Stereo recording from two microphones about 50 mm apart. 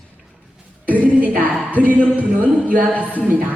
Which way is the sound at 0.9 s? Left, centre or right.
Right.